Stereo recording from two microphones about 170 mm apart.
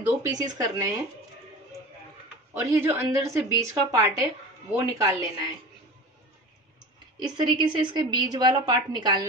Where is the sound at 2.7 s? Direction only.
15° right (ahead or behind).